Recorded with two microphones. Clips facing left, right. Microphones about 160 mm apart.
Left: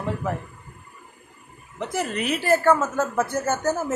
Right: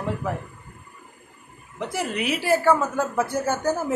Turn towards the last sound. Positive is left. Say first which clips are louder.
# even
turn(degrees=-10)  # may be behind; listen again after turning